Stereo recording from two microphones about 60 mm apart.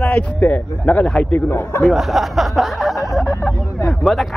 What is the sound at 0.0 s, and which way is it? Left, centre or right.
Speech, left.